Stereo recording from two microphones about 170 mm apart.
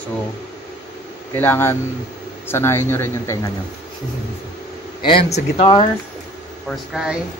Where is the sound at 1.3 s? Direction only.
15° left (ahead or behind).